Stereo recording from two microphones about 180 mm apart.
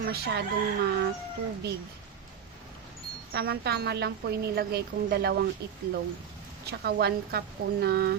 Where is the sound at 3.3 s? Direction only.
65° right (ahead or behind).